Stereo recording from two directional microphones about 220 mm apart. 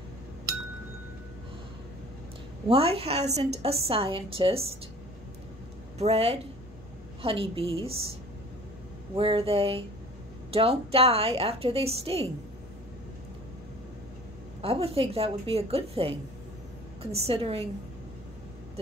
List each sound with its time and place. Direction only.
2.7 s a woman's voice: 25° right (ahead or behind)
5.9 s a woman's voice: 30° right (ahead or behind)
9.1 s a woman's voice: 25° right (ahead or behind)
14.6 s a woman's voice: 25° right (ahead or behind)